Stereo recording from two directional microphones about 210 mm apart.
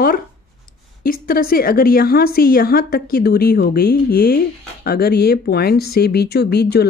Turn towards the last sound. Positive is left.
turn(degrees=50)  # may be behind; listen again after turning